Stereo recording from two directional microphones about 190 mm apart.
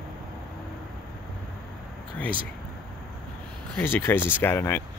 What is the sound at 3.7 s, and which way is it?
Speech, 10° left (ahead or behind).